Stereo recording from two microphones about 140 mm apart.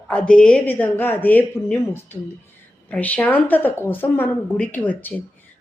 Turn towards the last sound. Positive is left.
turn(degrees=10)  # may be behind; listen again after turning